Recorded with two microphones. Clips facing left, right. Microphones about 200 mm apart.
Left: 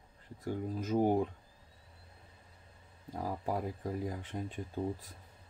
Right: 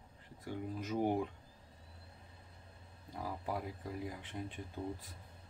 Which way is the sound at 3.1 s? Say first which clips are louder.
Left 5 dB; 45° left (ahead or behind).